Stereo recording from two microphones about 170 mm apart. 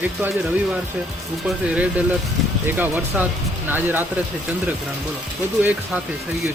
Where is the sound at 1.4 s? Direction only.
5° right (ahead or behind).